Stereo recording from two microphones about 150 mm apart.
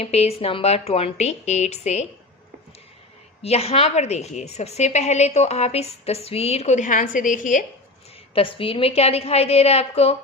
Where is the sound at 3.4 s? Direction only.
45° left (ahead or behind); by 7.7 s 60° left (ahead or behind).